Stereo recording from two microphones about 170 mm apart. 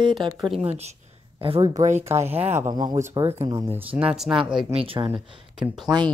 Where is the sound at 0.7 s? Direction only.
40° right (ahead or behind).